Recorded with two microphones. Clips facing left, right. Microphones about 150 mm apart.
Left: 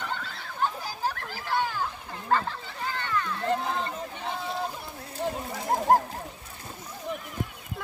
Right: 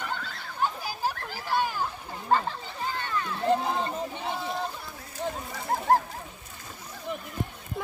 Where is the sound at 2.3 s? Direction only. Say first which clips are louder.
Right 1 dB; 15° right (ahead or behind).